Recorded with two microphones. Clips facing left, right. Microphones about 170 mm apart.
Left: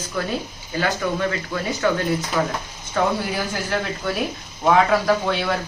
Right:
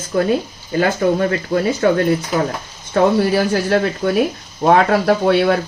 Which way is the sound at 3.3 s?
70° right (ahead or behind).